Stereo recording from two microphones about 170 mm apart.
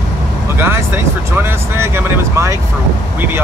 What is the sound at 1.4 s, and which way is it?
Speech, 15° right (ahead or behind).